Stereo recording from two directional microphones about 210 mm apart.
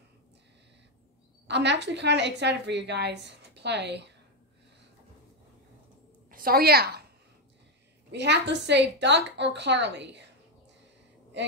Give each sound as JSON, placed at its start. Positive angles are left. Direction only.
{"t": 1.5, "sound": "a woman's voice", "side_deg": -55}
{"t": 6.3, "sound": "a woman's voice", "side_deg": -45}
{"t": 8.1, "sound": "a woman's voice", "side_deg": -55}